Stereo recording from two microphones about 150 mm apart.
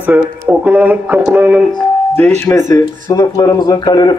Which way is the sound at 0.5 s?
10° right (ahead or behind).